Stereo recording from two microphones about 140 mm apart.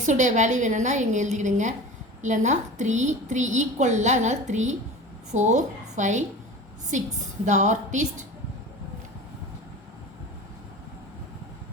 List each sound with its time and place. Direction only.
0.0 s a woman's voice: 60° right (ahead or behind)